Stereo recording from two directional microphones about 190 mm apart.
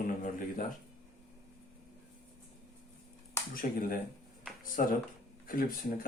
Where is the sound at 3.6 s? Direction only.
40° left (ahead or behind).